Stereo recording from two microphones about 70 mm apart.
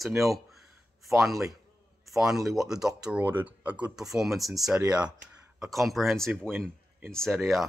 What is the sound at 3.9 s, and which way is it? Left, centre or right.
Speech, centre.